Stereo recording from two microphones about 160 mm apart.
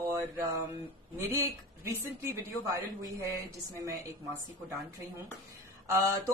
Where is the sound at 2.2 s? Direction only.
20° right (ahead or behind).